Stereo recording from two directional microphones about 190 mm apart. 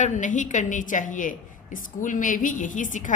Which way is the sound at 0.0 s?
40° left (ahead or behind).